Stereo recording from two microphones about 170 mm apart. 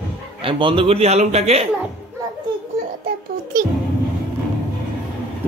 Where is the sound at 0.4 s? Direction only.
30° right (ahead or behind).